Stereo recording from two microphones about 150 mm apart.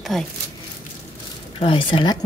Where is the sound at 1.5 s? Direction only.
35° left (ahead or behind).